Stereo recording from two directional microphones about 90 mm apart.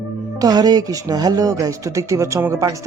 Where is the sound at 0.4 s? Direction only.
45° right (ahead or behind).